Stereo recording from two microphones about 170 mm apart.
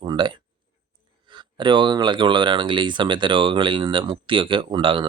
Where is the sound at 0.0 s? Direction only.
30° right (ahead or behind).